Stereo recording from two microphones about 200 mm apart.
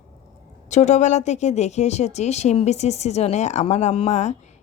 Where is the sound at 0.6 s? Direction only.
35° left (ahead or behind).